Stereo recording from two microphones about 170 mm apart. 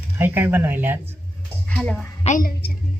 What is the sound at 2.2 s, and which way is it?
Speech, 50° left (ahead or behind).